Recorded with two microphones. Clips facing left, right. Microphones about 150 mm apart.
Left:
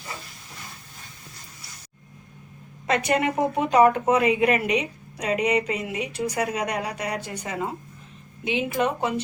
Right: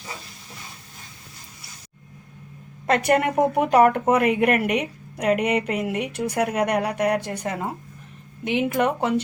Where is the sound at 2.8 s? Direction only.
55° right (ahead or behind).